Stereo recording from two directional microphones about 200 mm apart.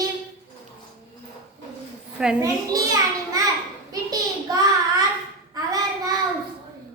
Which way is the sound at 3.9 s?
20° right (ahead or behind).